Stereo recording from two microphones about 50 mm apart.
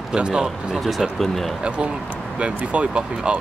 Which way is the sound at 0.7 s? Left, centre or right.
Centre.